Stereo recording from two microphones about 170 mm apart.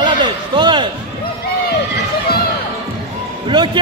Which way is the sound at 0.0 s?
25° right (ahead or behind).